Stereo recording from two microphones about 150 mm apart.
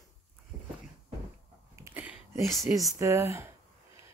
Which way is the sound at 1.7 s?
15° right (ahead or behind).